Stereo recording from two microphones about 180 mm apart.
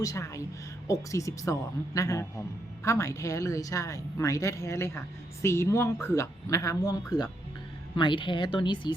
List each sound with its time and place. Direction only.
0.0 s a woman's voice: 20° left (ahead or behind)